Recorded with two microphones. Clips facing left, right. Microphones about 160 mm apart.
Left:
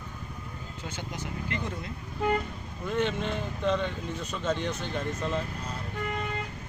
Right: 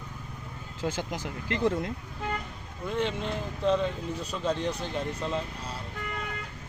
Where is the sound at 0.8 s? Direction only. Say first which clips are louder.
Right 7 dB; 90° right.